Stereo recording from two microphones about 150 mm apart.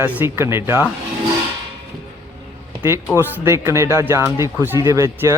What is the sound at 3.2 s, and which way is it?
Speech, 15° right (ahead or behind).